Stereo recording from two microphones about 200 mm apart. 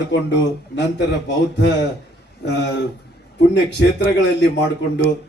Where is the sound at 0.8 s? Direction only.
60° left (ahead or behind).